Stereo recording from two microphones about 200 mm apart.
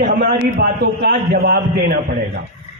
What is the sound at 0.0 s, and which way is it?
A man's voice, 50° right (ahead or behind).